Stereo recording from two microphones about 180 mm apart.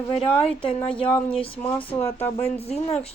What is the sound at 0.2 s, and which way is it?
Speech, 30° left (ahead or behind).